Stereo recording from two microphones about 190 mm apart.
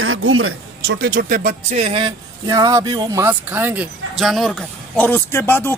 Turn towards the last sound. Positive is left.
turn(degrees=10)  # may be behind; listen again after turning